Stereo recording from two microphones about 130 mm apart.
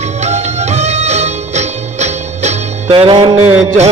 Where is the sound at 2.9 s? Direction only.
40° right (ahead or behind).